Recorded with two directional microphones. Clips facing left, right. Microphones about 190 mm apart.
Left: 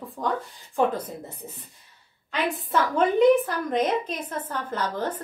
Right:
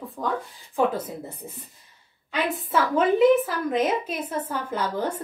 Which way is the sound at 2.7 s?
5° right (ahead or behind).